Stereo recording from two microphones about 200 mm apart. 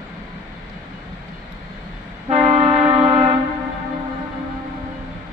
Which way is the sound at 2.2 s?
30° right (ahead or behind).